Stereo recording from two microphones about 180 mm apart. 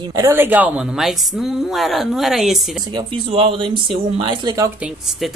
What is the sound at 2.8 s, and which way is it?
Speech, 30° right (ahead or behind).